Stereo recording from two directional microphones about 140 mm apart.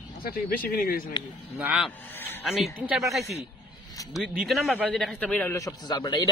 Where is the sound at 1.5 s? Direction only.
5° right (ahead or behind).